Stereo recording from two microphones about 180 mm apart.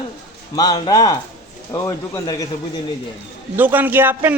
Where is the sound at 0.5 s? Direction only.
20° left (ahead or behind).